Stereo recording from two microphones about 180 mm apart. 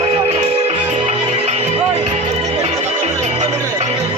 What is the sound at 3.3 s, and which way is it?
Music, 40° right (ahead or behind).